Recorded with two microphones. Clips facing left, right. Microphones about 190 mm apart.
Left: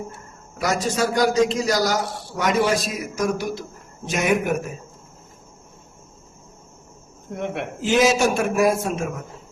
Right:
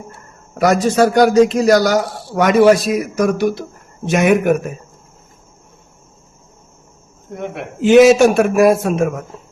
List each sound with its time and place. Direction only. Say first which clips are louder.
0.6 s a man's voice: right 9 dB; 60° right (ahead or behind)
7.3 s a man's voice: right 1 dB; centre (ahead or behind)
7.8 s a man's voice: right 10 dB; 65° right (ahead or behind)